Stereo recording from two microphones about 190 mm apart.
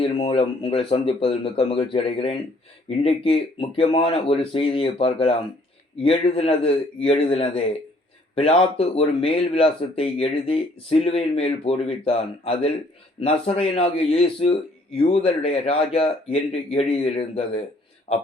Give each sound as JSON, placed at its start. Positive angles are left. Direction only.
{"t": 0.0, "sound": "speech", "side_deg": 30}